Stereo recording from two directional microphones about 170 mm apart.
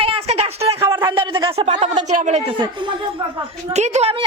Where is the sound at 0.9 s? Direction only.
25° right (ahead or behind).